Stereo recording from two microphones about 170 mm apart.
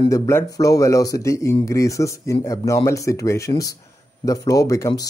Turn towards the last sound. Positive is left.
turn(degrees=20)  # may be behind; listen again after turning